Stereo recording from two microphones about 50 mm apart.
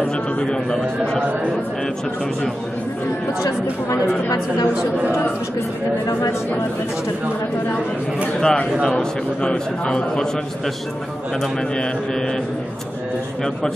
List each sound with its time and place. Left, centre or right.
0.0 s a man's voice: centre
8.4 s a man's voice: centre